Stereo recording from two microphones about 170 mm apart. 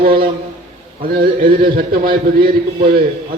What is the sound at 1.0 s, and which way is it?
A man's voice, 60° right (ahead or behind).